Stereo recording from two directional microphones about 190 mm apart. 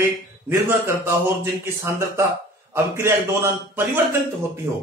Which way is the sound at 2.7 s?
15° right (ahead or behind).